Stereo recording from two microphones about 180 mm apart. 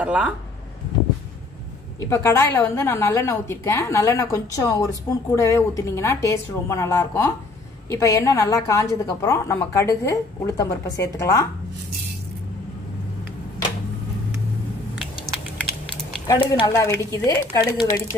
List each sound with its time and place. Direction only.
0.0 s speech: 10° right (ahead or behind)
2.0 s a woman's voice: 15° left (ahead or behind)
16.3 s a woman's voice: 25° left (ahead or behind)